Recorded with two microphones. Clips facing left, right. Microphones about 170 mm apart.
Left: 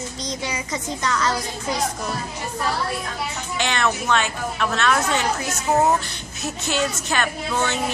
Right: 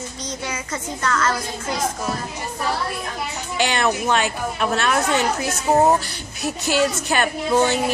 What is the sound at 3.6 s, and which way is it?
A woman's voice, 10° right (ahead or behind).